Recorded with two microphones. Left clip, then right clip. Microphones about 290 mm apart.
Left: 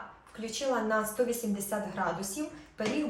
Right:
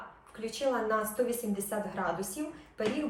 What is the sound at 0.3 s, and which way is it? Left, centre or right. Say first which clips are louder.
Speech: even; centre.